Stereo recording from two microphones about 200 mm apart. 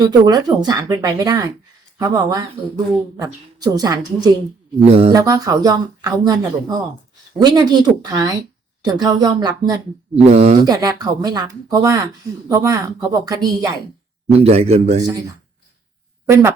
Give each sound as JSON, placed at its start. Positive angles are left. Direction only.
{"t": 0.0, "sound": "speech", "side_deg": -20}
{"t": 4.9, "sound": "speech", "side_deg": -30}
{"t": 5.1, "sound": "speech", "side_deg": -15}
{"t": 10.2, "sound": "a man's voice", "side_deg": -35}
{"t": 10.7, "sound": "speech", "side_deg": -20}
{"t": 14.3, "sound": "a man's voice", "side_deg": -30}
{"t": 16.3, "sound": "speech", "side_deg": -15}